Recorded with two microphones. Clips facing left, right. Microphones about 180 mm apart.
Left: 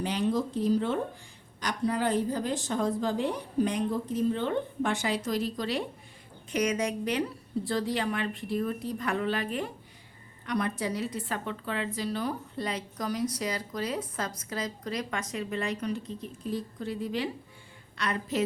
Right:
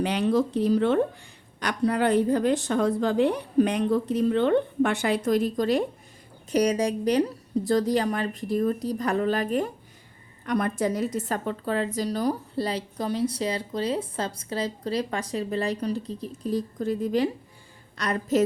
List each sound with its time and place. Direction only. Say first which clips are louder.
0.0 s a woman's voice: right 5 dB; 70° right (ahead or behind); by 5.8 s 45° right (ahead or behind)
6.5 s a woman's voice: right 6 dB; 35° right (ahead or behind)